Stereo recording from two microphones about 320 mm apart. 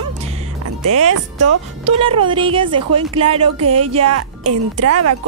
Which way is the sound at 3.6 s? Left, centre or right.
Right.